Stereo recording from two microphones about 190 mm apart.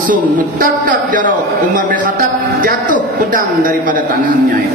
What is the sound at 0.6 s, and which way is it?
Speech, 45° right (ahead or behind).